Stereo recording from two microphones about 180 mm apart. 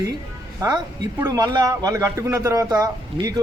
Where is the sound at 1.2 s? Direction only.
20° right (ahead or behind).